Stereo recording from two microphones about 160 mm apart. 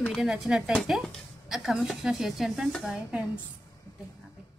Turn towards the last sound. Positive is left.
turn(degrees=0)  # may be behind; listen again after turning